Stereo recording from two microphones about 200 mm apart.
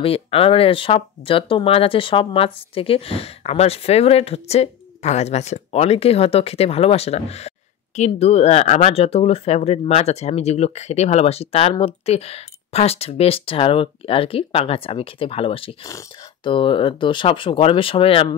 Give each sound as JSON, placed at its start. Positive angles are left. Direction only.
{"t": 0.0, "sound": "speech", "side_deg": 30}